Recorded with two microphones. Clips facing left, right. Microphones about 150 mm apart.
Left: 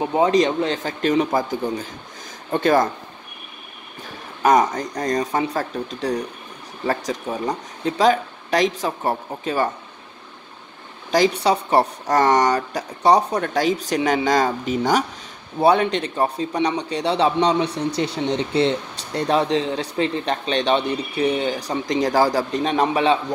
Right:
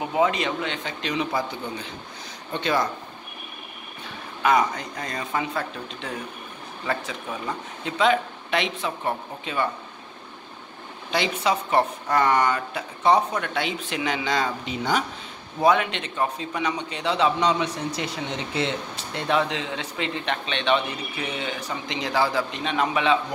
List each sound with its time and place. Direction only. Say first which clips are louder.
0.0 s a man's voice: left 6 dB; 35° left (ahead or behind)
4.4 s a man's voice: left 5 dB; 40° left (ahead or behind)
11.1 s a man's voice: left 6 dB; 40° left (ahead or behind)